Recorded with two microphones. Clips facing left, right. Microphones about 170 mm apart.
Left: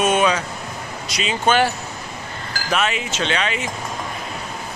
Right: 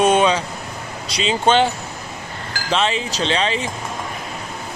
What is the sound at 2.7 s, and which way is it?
Speech, 30° right (ahead or behind).